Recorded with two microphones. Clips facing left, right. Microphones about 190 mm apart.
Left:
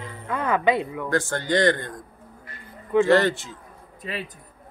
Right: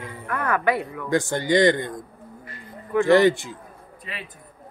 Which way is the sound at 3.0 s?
15° right (ahead or behind).